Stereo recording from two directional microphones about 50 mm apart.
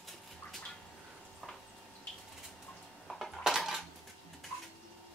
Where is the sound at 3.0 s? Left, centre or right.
Centre.